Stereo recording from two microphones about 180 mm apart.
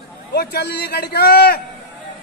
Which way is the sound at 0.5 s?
65° left (ahead or behind).